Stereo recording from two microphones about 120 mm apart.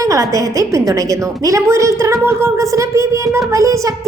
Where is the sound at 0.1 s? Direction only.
25° right (ahead or behind).